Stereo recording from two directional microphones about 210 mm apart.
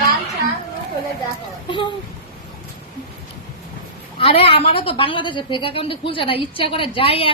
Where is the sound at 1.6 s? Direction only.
25° left (ahead or behind).